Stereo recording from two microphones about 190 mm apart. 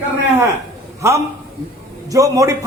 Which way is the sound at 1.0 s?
15° right (ahead or behind).